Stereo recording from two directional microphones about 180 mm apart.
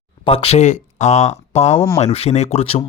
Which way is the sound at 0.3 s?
35° left (ahead or behind).